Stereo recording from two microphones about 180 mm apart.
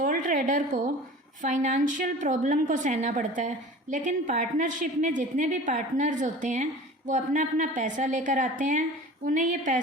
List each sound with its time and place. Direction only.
0.0 s a woman's voice: 50° right (ahead or behind)